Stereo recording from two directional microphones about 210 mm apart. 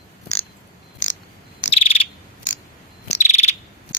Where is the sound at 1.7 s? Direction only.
30° left (ahead or behind).